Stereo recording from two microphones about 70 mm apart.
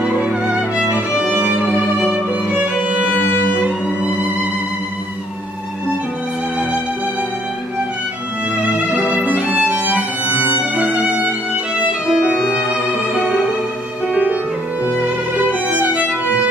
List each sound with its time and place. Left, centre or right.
0.0 s music: centre
2.5 s violin: centre
9.2 s violin: right
10.8 s music: centre
12.1 s violin: centre
14.1 s music: right
15.7 s music: right